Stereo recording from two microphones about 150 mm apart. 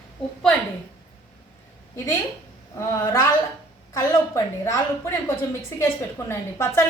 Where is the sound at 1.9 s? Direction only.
15° left (ahead or behind).